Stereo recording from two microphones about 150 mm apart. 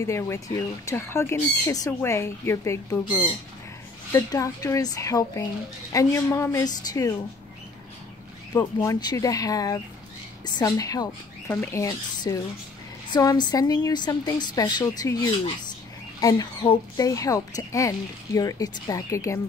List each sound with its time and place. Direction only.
0.0 s speech: 20° left (ahead or behind)
4.1 s speech: 20° left (ahead or behind)
8.5 s speech: 25° left (ahead or behind)